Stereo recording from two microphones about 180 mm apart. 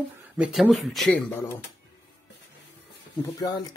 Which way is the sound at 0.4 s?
Centre (ahead or behind).